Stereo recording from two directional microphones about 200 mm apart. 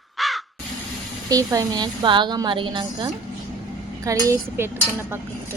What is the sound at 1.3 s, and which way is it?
A woman's voice, 15° right (ahead or behind).